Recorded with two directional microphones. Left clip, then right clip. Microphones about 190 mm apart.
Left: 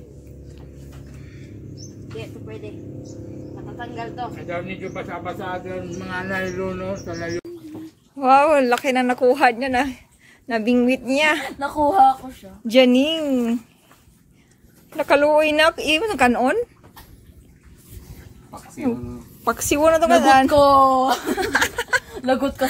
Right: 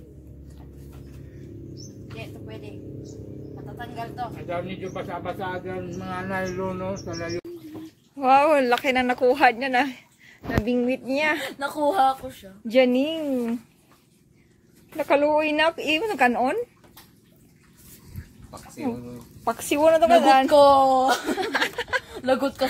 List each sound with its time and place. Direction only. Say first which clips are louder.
3.7 s speech: left 3 dB; 30° right (ahead or behind); by 7.4 s 45° right (ahead or behind)
8.2 s a woman's voice: left 3 dB; centre (ahead or behind)
12.6 s a woman's voice: left 5 dB; 5° left (ahead or behind)
15.0 s a woman's voice: left 5 dB; centre (ahead or behind)
19.4 s a woman's voice: left 3 dB; centre (ahead or behind)